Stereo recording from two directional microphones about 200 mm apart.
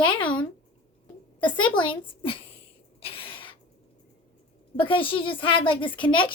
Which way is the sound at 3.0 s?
30° left (ahead or behind).